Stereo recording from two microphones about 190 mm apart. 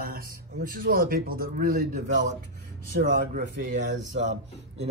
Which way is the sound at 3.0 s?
50° right (ahead or behind).